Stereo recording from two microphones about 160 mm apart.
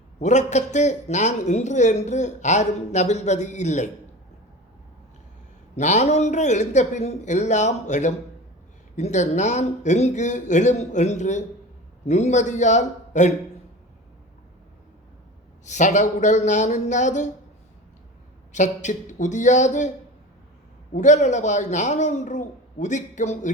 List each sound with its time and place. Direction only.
0.2 s a man's voice: 45° left (ahead or behind)
5.7 s a man's voice: 45° left (ahead or behind)
15.6 s a man's voice: 50° left (ahead or behind)
18.5 s a man's voice: 50° left (ahead or behind)
20.9 s a man's voice: 50° left (ahead or behind)